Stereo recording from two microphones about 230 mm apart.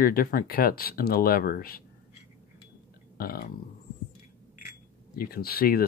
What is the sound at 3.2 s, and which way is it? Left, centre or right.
Speech, left.